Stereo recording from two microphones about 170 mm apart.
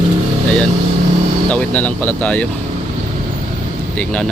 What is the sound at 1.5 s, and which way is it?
Speech, 10° left (ahead or behind).